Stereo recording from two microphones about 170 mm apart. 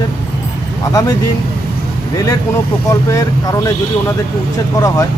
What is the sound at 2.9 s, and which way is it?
Speech, 20° left (ahead or behind).